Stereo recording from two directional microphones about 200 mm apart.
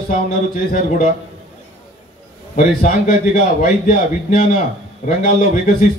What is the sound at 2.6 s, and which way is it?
A man's voice, 45° left (ahead or behind).